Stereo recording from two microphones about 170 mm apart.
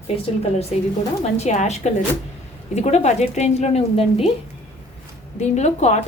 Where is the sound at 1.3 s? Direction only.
40° left (ahead or behind).